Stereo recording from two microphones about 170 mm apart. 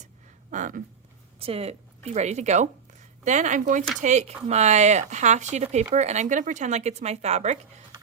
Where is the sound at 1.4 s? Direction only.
35° right (ahead or behind).